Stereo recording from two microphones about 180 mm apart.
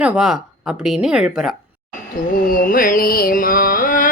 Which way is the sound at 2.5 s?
50° left (ahead or behind).